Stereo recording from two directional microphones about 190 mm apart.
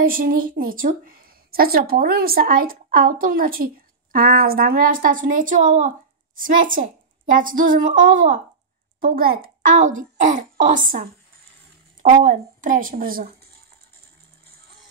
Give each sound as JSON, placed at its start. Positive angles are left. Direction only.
{"t": 0.0, "sound": "a woman's voice", "side_deg": -50}